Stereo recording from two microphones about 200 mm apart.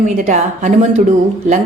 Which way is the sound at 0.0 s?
40° right (ahead or behind).